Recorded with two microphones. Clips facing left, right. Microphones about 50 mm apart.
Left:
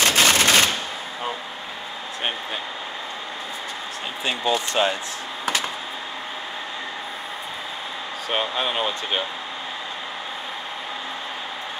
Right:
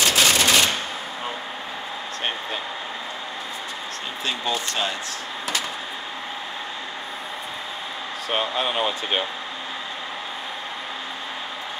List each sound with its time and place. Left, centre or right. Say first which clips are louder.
0.1 s machine gun: left 1 dB; left
4.3 s speech: left 4 dB; left
8.3 s speech: even; centre